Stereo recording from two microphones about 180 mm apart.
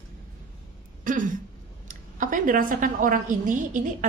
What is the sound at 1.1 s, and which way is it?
Throat clearing, 45° right (ahead or behind).